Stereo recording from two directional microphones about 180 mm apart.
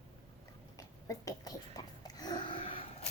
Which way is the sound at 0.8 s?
20° left (ahead or behind).